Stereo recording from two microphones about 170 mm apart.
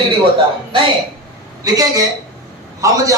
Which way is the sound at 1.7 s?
20° right (ahead or behind).